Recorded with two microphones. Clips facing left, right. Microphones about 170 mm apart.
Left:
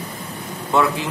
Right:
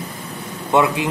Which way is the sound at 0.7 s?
20° right (ahead or behind).